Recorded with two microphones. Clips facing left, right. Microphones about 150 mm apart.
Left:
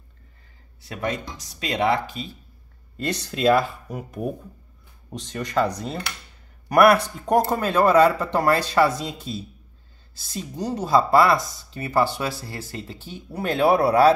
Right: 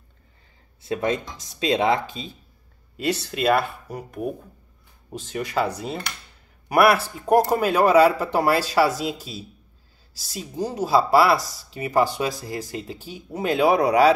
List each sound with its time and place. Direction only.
0.8 s speech: 25° right (ahead or behind)
3.0 s a man's voice: 5° right (ahead or behind)
10.5 s a man's voice: 10° right (ahead or behind)